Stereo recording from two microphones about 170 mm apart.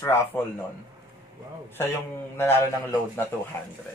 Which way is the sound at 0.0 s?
15° left (ahead or behind).